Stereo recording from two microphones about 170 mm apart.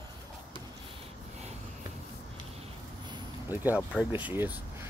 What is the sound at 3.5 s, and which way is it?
Speech, 10° right (ahead or behind).